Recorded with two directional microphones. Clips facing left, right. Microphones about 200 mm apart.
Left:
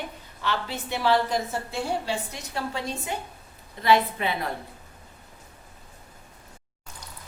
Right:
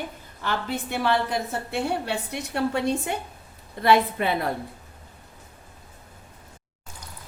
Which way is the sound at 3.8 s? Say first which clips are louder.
Right 2 dB; 50° right (ahead or behind).